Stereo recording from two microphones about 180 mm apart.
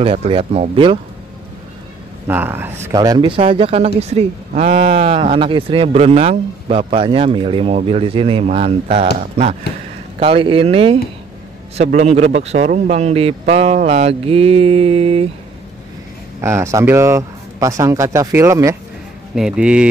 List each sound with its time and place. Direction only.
0.0 s speech: 30° right (ahead or behind)
2.2 s speech: 10° right (ahead or behind); by 15.2 s 35° right (ahead or behind)
16.3 s speech: 15° right (ahead or behind)
19.3 s speech: 5° right (ahead or behind)